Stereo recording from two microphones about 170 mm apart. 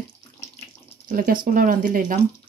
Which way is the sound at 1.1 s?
55° right (ahead or behind).